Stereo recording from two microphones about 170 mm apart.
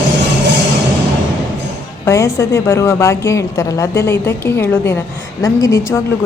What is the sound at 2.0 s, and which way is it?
A woman's voice, 20° left (ahead or behind).